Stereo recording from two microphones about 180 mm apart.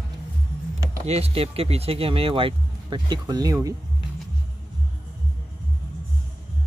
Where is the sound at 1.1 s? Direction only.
35° right (ahead or behind).